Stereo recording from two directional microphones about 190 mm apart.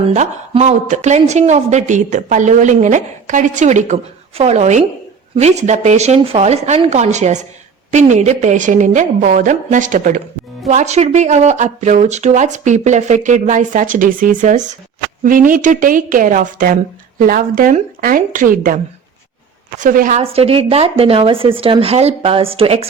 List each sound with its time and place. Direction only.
0.1 s a woman's voice: 35° right (ahead or behind)
19.8 s a woman's voice: 45° right (ahead or behind)
20.2 s a woman's voice: 30° right (ahead or behind)